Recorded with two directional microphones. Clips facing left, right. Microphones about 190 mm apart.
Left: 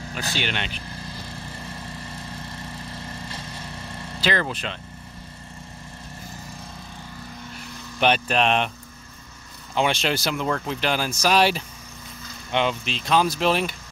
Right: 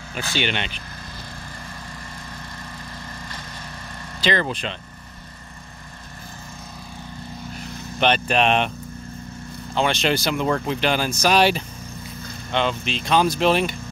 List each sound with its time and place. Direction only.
0.4 s speech: centre (ahead or behind)
3.2 s vehicle: 30° left (ahead or behind)
4.2 s speech: 5° left (ahead or behind)
8.0 s speech: 5° left (ahead or behind)
9.8 s speech: 10° left (ahead or behind)